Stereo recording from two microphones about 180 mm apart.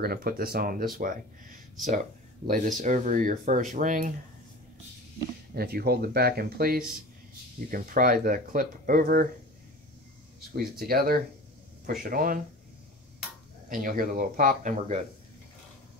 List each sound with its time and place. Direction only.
0.0 s speech: 55° right (ahead or behind)
2.4 s speech: 50° right (ahead or behind)
5.5 s speech: 60° right (ahead or behind)
10.8 s speech: 55° right (ahead or behind)
13.7 s speech: 50° right (ahead or behind)